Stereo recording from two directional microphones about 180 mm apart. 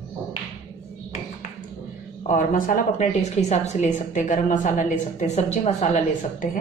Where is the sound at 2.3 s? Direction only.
45° left (ahead or behind).